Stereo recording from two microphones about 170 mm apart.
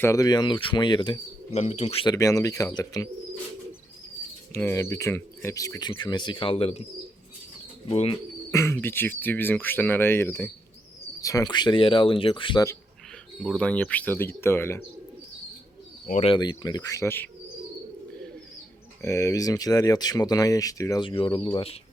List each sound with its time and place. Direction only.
0.0 s speech: 20° left (ahead or behind)
1.5 s speech: 40° left (ahead or behind)
2.0 s speech: 20° left (ahead or behind)
4.5 s speech: 15° left (ahead or behind); by 6.8 s 35° left (ahead or behind)
7.9 s speech: 35° left (ahead or behind)
8.4 s speech: 15° left (ahead or behind); by 12.6 s 30° left (ahead or behind)
13.4 s speech: 5° left (ahead or behind)
16.2 s speech: 25° left (ahead or behind)
19.0 s speech: 20° left (ahead or behind); by 21.8 s 35° left (ahead or behind)